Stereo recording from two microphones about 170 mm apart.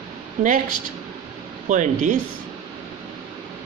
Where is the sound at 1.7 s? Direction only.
45° right (ahead or behind).